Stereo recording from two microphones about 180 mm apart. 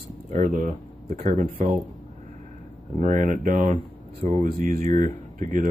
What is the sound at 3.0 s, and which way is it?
Speech, 45° right (ahead or behind).